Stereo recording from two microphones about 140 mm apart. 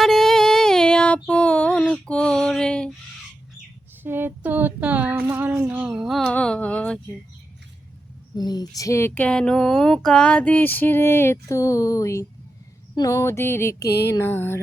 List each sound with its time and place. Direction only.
0.0 s female singing: centre (ahead or behind)
4.0 s a sound: 15° right (ahead or behind); by 7.0 s 10° left (ahead or behind)
8.4 s speech: 30° left (ahead or behind)